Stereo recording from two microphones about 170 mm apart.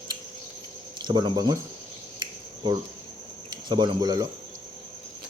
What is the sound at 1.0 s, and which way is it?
Speech, 25° right (ahead or behind).